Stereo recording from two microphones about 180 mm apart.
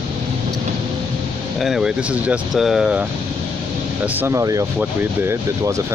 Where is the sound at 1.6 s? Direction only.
5° right (ahead or behind).